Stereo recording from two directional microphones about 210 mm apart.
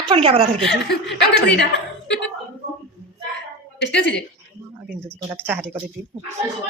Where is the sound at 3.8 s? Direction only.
60° left (ahead or behind).